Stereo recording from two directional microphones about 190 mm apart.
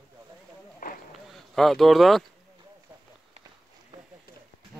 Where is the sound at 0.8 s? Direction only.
45° left (ahead or behind).